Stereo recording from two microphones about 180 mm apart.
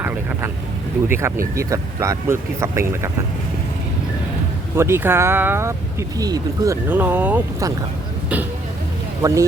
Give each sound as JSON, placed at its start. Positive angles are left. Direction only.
{"t": 0.0, "sound": "vehicle", "side_deg": -10}
{"t": 1.0, "sound": "speech", "side_deg": -15}
{"t": 4.8, "sound": "speech", "side_deg": -15}
{"t": 9.2, "sound": "speech", "side_deg": -15}